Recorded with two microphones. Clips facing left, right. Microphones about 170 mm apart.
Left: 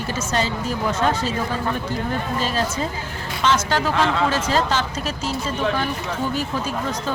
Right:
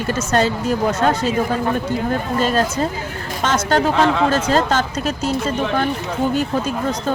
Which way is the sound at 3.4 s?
45° right (ahead or behind).